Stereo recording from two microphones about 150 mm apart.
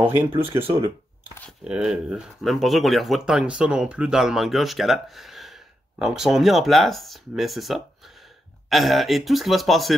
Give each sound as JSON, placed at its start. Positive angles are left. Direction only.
{"t": 0.6, "sound": "speech", "side_deg": -15}
{"t": 1.6, "sound": "speech", "side_deg": -5}